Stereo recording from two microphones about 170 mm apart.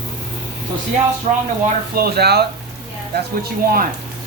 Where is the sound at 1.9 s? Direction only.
65° right (ahead or behind).